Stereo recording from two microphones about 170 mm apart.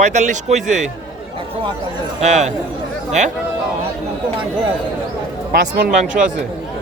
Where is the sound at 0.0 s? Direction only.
45° right (ahead or behind).